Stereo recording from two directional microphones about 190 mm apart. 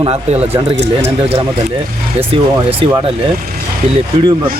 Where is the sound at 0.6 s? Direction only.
20° right (ahead or behind).